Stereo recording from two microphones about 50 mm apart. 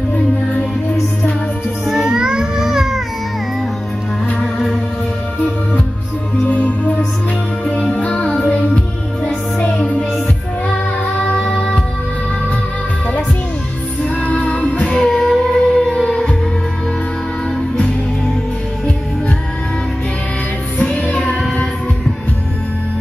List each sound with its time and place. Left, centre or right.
1.9 s music: centre
4.4 s organ: centre
6.4 s music: left
14.2 s music: left
15.0 s music: centre
15.5 s music: centre
21.0 s music: left